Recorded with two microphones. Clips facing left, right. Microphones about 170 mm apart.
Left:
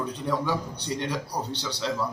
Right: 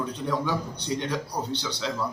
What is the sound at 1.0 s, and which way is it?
Speech, centre (ahead or behind).